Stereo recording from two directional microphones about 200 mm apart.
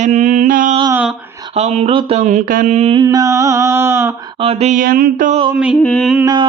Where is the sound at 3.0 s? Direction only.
15° right (ahead or behind).